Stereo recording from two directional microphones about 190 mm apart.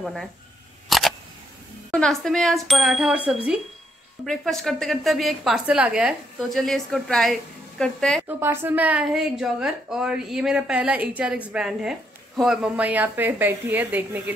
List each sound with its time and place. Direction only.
0.0 s a woman's voice: centre (ahead or behind)
0.8 s camera: centre (ahead or behind)
1.9 s a woman's voice: 5° left (ahead or behind)
4.3 s a woman's voice: centre (ahead or behind)
8.3 s a woman's voice: 10° right (ahead or behind)